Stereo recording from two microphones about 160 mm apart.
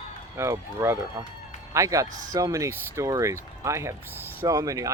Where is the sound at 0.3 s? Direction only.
20° right (ahead or behind).